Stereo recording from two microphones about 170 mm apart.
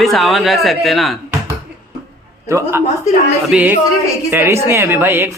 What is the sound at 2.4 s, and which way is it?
A man's voice, 15° right (ahead or behind).